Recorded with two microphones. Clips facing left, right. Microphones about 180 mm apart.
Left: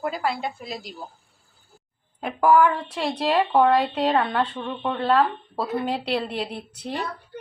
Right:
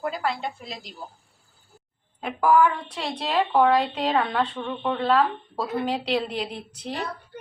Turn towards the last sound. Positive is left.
turn(degrees=0)  # may be behind; listen again after turning